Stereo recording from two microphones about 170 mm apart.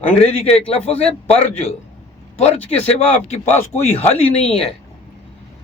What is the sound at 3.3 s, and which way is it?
A man's voice, 40° left (ahead or behind).